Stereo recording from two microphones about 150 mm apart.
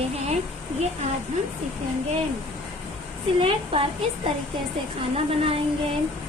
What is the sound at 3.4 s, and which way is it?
Speech, 35° right (ahead or behind).